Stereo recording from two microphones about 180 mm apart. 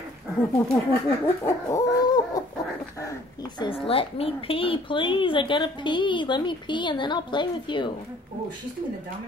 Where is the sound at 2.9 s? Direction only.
20° left (ahead or behind).